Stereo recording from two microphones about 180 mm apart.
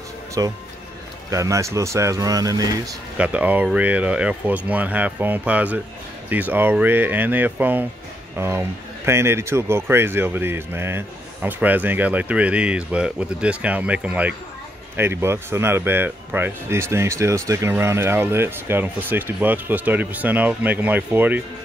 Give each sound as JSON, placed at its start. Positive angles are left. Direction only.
{"t": 0.4, "sound": "speech", "side_deg": -20}
{"t": 3.2, "sound": "speech", "side_deg": -10}